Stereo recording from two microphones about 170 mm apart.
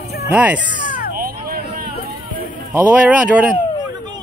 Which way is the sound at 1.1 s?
60° right (ahead or behind).